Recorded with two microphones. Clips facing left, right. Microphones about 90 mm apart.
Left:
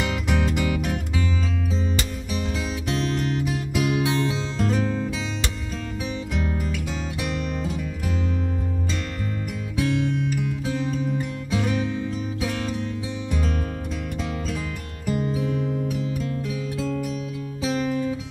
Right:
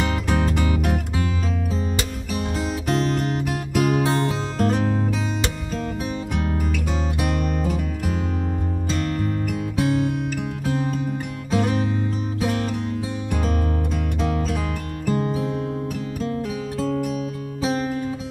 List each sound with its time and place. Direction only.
0.0 s music: 45° right (ahead or behind)
2.3 s music: 45° right (ahead or behind)
6.3 s music: 50° right (ahead or behind)
9.8 s music: 40° right (ahead or behind)